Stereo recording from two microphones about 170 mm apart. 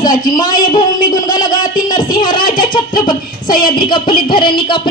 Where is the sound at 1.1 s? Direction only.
20° left (ahead or behind).